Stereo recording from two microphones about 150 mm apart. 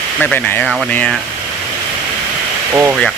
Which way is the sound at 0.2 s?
10° left (ahead or behind).